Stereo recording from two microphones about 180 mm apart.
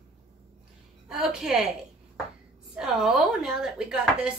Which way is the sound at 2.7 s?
Centre (ahead or behind).